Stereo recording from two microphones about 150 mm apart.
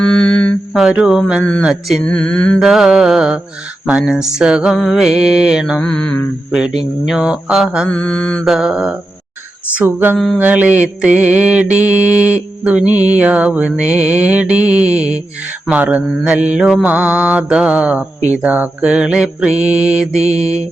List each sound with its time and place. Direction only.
0.0 s mantra: 5° left (ahead or behind)
0.8 s mantra: 5° right (ahead or behind)
5.8 s mantra: 5° left (ahead or behind)
6.5 s mantra: 5° right (ahead or behind)
7.9 s mantra: 10° left (ahead or behind)
8.4 s mantra: 5° right (ahead or behind)
20.3 s mantra: 45° right (ahead or behind)